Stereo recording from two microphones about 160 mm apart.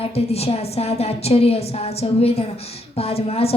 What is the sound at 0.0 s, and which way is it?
A woman's voice, 40° left (ahead or behind).